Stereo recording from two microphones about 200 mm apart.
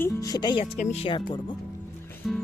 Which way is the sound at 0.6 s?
35° left (ahead or behind).